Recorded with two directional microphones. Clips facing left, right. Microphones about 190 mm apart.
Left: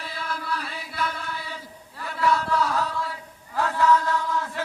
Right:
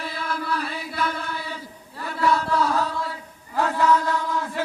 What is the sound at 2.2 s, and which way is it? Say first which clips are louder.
Chant: right 2 dB; 35° right (ahead or behind).